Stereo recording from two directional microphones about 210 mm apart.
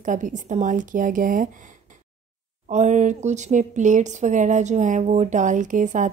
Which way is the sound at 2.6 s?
35° right (ahead or behind).